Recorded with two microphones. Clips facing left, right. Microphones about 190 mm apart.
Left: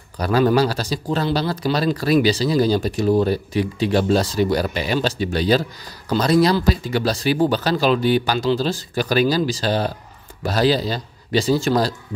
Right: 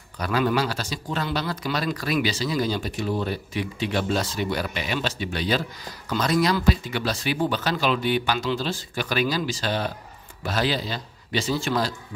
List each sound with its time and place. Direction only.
0.2 s a man's voice: 35° left (ahead or behind)